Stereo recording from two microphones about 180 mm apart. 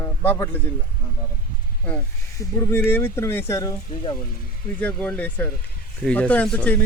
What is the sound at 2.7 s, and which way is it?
Speech, 10° left (ahead or behind).